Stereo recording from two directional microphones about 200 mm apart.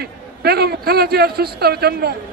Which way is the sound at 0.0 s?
55° right (ahead or behind).